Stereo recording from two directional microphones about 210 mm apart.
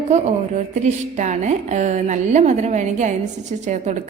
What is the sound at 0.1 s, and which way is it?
A woman's voice, 35° right (ahead or behind).